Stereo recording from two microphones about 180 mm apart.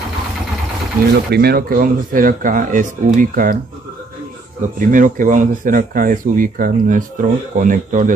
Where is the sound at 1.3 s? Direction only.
60° right (ahead or behind).